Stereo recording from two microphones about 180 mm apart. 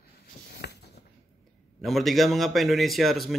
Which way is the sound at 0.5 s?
65° left (ahead or behind).